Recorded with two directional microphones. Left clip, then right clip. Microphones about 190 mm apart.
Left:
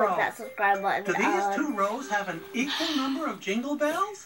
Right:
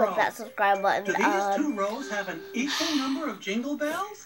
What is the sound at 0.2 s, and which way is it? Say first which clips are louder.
Speech: right 1 dB; 20° right (ahead or behind).